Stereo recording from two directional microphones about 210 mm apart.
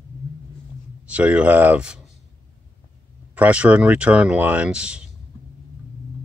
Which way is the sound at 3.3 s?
5° right (ahead or behind).